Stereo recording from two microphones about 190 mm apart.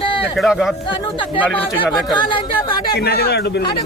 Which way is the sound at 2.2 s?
25° left (ahead or behind).